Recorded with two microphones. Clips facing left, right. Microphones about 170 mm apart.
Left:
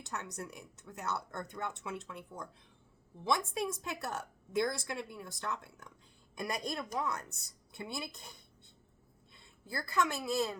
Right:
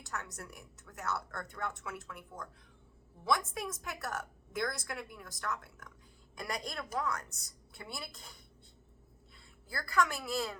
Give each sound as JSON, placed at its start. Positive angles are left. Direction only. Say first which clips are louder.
{"t": 0.0, "sound": "a woman's voice", "louder": "left 2 dB", "side_deg": 20}
{"t": 9.6, "sound": "a woman's voice", "louder": "right 1 dB", "side_deg": 20}